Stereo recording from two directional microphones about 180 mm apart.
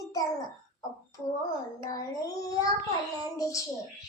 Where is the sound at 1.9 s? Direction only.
20° left (ahead or behind).